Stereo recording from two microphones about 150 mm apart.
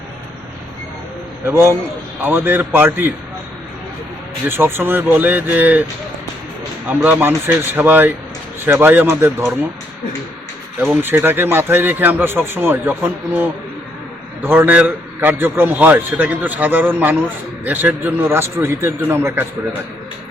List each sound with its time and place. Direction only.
1.5 s a man's voice: 15° right (ahead or behind)
4.4 s a man's voice: 15° right (ahead or behind)
6.8 s a man's voice: 10° right (ahead or behind)
11.0 s a man's voice: 15° right (ahead or behind)